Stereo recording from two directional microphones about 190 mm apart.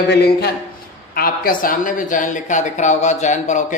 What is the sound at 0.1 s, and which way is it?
A woman's voice, 60° left (ahead or behind).